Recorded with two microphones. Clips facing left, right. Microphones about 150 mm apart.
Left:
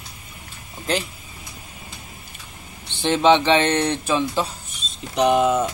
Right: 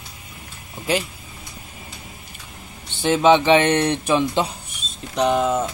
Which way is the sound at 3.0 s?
5° right (ahead or behind).